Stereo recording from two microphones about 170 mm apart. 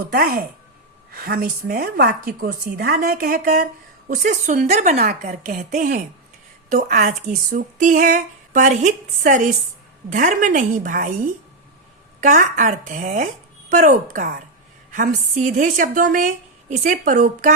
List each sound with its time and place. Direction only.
0.1 s a woman's voice: 60° right (ahead or behind); by 4.9 s 40° right (ahead or behind)
4.9 s a woman's voice: 55° right (ahead or behind)